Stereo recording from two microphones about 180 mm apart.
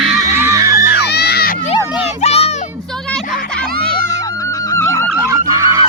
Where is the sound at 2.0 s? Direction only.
35° left (ahead or behind).